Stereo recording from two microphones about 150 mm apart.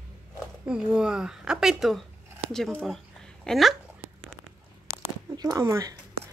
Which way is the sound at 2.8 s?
5° left (ahead or behind).